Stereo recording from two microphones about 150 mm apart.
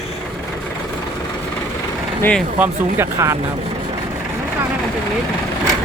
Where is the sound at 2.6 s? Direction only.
15° right (ahead or behind).